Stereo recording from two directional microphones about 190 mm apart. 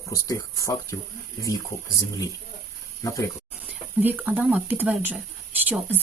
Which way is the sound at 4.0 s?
10° right (ahead or behind).